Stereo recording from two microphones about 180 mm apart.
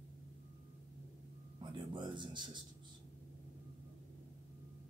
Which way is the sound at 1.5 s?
25° right (ahead or behind).